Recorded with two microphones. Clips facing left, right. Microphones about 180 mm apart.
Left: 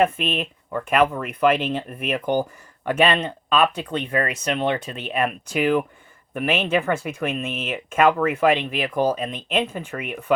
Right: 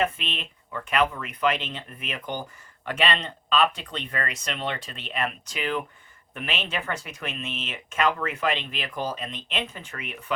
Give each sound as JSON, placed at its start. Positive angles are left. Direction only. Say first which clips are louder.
{"t": 0.0, "sound": "speech", "louder": "left 7 dB", "side_deg": 50}